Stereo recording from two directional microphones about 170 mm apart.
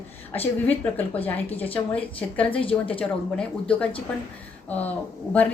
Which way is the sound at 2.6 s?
30° left (ahead or behind).